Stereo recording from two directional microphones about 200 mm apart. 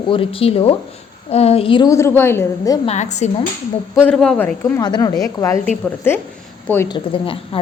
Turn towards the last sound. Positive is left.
turn(degrees=25)  # may be behind; listen again after turning